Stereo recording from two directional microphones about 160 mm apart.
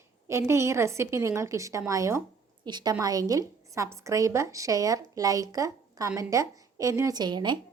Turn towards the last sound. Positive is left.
turn(degrees=-30)  # may be behind; listen again after turning